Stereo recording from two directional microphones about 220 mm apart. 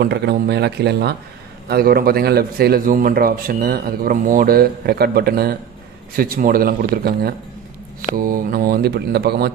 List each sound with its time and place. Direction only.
0.0 s a man's voice: 50° right (ahead or behind)